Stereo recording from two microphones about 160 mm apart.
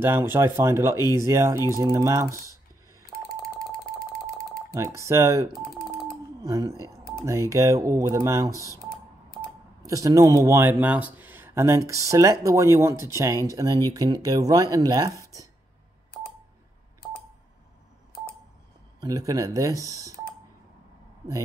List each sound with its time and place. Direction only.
0.0 s speech: 15° right (ahead or behind)
4.7 s speech: 20° right (ahead or behind)
9.8 s speech: 20° right (ahead or behind)
18.9 s speech: 20° right (ahead or behind)